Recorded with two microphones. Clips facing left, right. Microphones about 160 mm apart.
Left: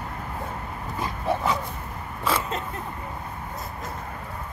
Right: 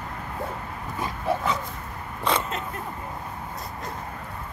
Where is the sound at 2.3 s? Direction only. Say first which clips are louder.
Right 1 dB; 5° left (ahead or behind).